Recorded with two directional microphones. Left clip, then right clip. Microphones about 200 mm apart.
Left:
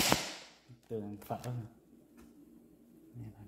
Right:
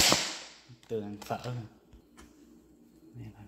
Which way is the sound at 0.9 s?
5° right (ahead or behind).